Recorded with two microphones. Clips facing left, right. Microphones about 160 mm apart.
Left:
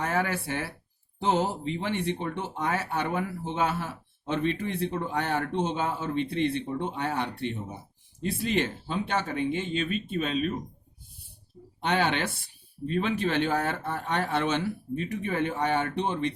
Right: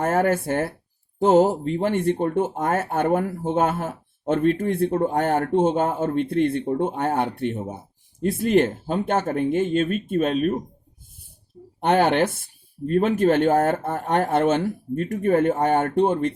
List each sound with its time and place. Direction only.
0.0 s speech: 50° right (ahead or behind)
11.8 s speech: 50° right (ahead or behind)